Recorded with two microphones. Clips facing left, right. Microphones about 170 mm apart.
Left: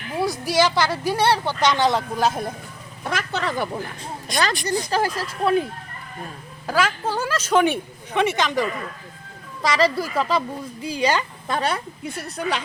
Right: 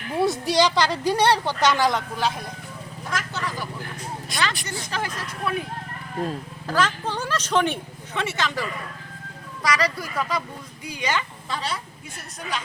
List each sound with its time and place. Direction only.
0.1 s a sound: centre (ahead or behind)
0.4 s speech: 15° right (ahead or behind)
1.7 s speech: 25° left (ahead or behind)
2.1 s speech: 45° left (ahead or behind)
3.0 s a woman's voice: 65° left (ahead or behind)
4.3 s speech: 5° right (ahead or behind)
4.9 s speech: 35° left (ahead or behind)
6.7 s a woman's voice: 10° left (ahead or behind)
9.6 s speech: 25° left (ahead or behind)
11.4 s a woman's voice: 55° left (ahead or behind)